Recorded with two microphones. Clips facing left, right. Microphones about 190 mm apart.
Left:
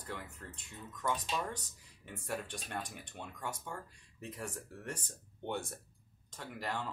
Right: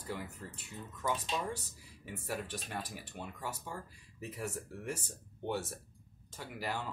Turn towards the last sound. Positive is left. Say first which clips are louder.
# right 1 dB
turn(degrees=-5)  # may be behind; listen again after turning